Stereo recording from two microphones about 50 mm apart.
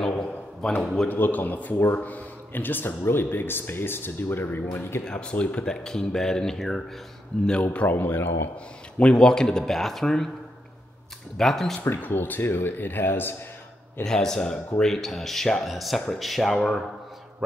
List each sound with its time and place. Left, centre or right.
0.2 s a sound: centre
1.0 s a man's voice: left
5.1 s speech: left; by 6.8 s centre
7.6 s a man's voice: left
8.9 s speech: centre
11.3 s speech: centre
11.8 s speech: left
14.0 s speech: centre